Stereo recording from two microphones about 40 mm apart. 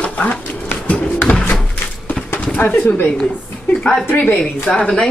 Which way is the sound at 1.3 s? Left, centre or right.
Left.